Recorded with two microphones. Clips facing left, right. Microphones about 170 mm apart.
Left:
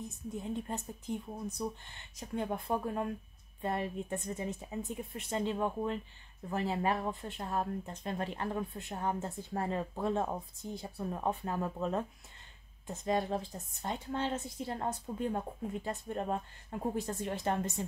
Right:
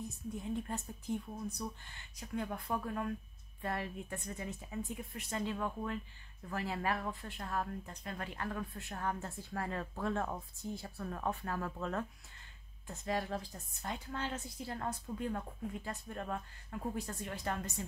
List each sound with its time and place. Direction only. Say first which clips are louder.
0.4 s speech: left 2 dB; 20° left (ahead or behind)